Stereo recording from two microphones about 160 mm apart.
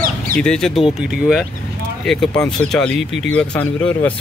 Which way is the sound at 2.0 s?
5° left (ahead or behind).